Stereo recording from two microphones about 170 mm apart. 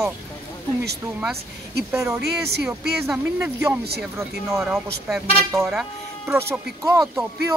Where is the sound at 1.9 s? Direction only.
15° right (ahead or behind).